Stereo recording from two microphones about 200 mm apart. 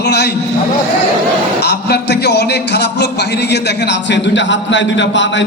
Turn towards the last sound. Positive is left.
turn(degrees=65)  # may be behind; listen again after turning